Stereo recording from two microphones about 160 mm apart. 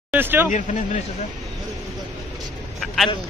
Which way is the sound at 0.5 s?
50° left (ahead or behind).